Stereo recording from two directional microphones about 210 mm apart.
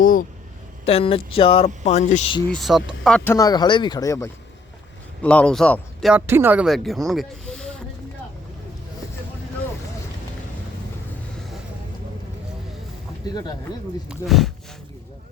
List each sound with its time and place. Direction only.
0.0 s a sound: 40° left (ahead or behind)
0.9 s speech: 25° left (ahead or behind)
2.5 s speech: centre (ahead or behind)
3.3 s speech: 20° left (ahead or behind); by 7.7 s 5° left (ahead or behind)
13.2 s speech: 20° left (ahead or behind)
14.1 s speech: centre (ahead or behind)